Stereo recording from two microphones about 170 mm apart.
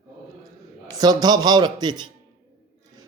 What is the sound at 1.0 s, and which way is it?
A man's voice, 25° right (ahead or behind).